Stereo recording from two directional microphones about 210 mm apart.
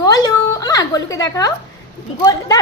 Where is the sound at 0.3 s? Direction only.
15° left (ahead or behind).